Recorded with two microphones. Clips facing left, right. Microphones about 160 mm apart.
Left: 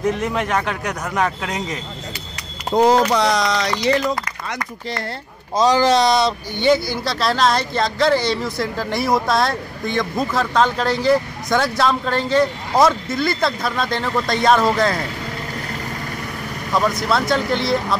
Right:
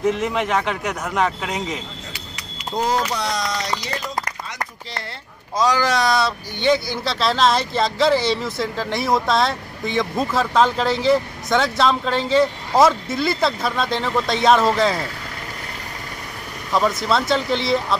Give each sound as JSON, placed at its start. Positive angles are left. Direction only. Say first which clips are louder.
{"t": 0.0, "sound": "speech", "louder": "even", "side_deg": 0}
{"t": 2.7, "sound": "speech", "louder": "left 7 dB", "side_deg": 65}
{"t": 5.6, "sound": "speech", "louder": "left 4 dB", "side_deg": 25}
{"t": 6.7, "sound": "speech", "louder": "left 2 dB", "side_deg": 0}
{"t": 16.7, "sound": "speech", "louder": "even", "side_deg": 0}